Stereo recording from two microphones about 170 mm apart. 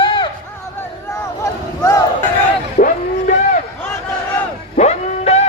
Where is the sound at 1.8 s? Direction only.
20° left (ahead or behind).